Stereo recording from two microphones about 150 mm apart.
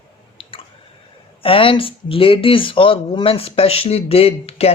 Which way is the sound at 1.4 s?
35° left (ahead or behind).